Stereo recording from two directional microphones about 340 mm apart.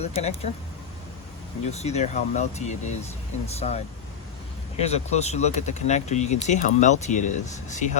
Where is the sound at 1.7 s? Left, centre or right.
Centre.